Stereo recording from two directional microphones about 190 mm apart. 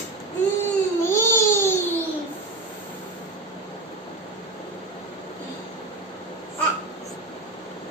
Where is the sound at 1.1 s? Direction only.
15° left (ahead or behind).